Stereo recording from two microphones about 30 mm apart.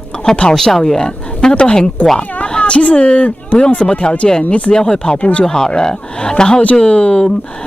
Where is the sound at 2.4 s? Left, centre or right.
Left.